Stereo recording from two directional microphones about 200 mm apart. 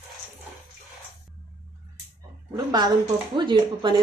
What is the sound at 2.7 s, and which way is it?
Speech, 20° right (ahead or behind).